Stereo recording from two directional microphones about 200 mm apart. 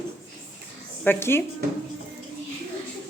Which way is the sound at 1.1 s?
10° left (ahead or behind).